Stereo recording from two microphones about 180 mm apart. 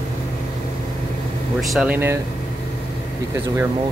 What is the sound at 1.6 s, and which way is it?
Speech, centre (ahead or behind).